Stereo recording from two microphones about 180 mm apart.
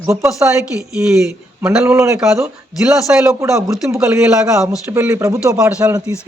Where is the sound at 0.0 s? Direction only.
15° right (ahead or behind).